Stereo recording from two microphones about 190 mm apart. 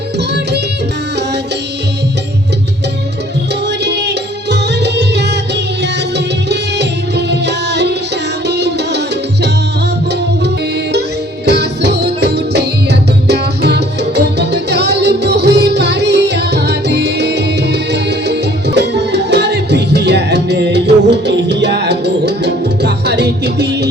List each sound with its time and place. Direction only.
0.2 s music: 60° right (ahead or behind)
3.7 s music: 65° right (ahead or behind)
11.4 s music: 60° right (ahead or behind)